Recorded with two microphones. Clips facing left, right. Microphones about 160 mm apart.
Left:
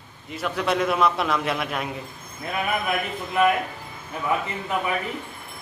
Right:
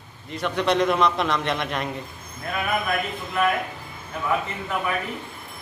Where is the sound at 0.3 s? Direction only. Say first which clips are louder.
Right 2 dB; 5° left (ahead or behind).